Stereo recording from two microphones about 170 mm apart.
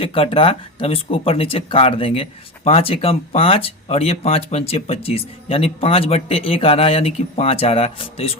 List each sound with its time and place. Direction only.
0.0 s speech: 30° left (ahead or behind)